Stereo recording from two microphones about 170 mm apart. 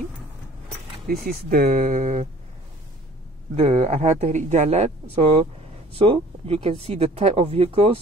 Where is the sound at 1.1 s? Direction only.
60° right (ahead or behind).